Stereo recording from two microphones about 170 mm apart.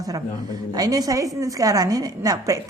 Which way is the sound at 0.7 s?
20° right (ahead or behind).